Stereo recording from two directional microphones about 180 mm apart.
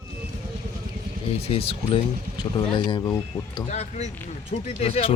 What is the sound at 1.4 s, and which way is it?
Speech, 30° left (ahead or behind).